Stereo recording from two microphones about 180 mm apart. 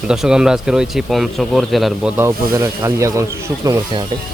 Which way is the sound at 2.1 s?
15° right (ahead or behind).